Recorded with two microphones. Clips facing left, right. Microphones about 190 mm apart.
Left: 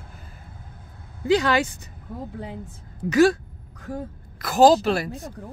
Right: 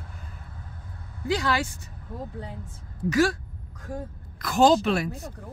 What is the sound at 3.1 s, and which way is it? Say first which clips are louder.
Speech: left 5 dB; 20° left (ahead or behind).